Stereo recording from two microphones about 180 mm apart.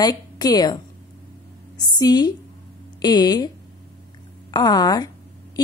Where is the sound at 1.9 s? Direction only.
20° left (ahead or behind).